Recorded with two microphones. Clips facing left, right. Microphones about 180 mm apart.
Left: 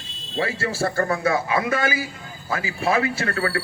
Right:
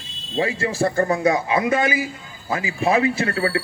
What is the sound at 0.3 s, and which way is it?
A man's voice, 20° right (ahead or behind).